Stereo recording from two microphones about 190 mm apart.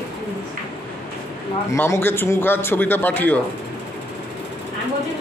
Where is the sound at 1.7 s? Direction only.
15° left (ahead or behind).